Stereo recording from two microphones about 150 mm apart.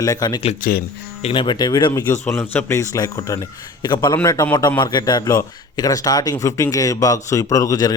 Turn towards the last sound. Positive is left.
turn(degrees=25)  # may be behind; listen again after turning